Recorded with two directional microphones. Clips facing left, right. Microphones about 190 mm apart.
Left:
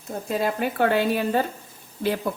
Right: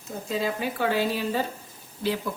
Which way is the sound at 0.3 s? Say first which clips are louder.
Left 3 dB; 55° left (ahead or behind).